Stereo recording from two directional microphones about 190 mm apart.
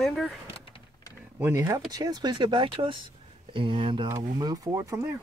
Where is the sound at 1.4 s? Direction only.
15° right (ahead or behind).